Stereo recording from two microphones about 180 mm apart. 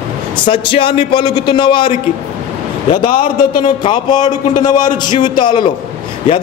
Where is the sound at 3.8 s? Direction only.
25° left (ahead or behind).